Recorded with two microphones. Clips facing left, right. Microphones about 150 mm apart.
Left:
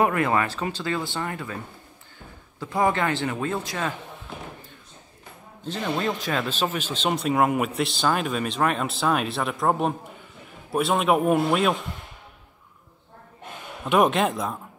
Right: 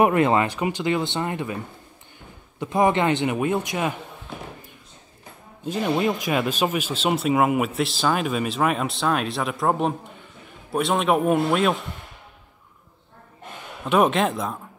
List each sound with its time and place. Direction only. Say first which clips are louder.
0.0 s speech: right 4 dB; 20° right (ahead or behind)
2.6 s speech: right 3 dB; 20° right (ahead or behind)
5.7 s speech: right 4 dB; 10° right (ahead or behind)
13.8 s speech: right 1 dB; centre (ahead or behind)